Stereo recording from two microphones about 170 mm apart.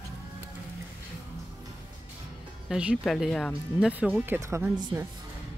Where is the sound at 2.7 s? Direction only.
5° right (ahead or behind).